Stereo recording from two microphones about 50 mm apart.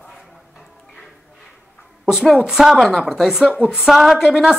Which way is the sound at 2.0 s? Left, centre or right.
Centre.